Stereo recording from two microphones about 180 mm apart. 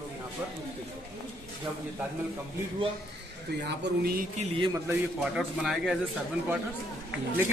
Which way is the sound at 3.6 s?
55° right (ahead or behind).